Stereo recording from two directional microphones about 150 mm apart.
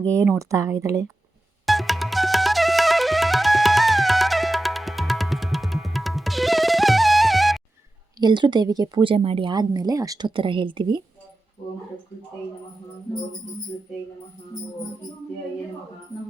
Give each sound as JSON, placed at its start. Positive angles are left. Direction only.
{"t": 0.0, "sound": "speech", "side_deg": -20}
{"t": 1.6, "sound": "flute", "side_deg": 0}
{"t": 8.2, "sound": "speech", "side_deg": -30}